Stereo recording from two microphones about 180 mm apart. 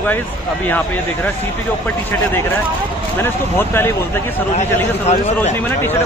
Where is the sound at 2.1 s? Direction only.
10° left (ahead or behind).